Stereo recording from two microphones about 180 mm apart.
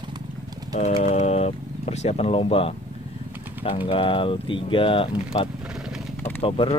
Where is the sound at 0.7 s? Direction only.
40° left (ahead or behind).